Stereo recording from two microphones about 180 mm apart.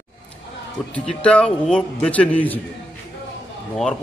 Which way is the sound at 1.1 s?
5° left (ahead or behind).